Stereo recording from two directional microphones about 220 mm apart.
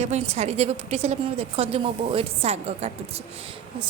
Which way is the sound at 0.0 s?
30° right (ahead or behind).